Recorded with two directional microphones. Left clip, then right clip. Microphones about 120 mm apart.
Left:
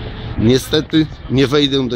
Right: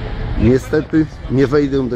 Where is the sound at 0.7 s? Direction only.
30° left (ahead or behind).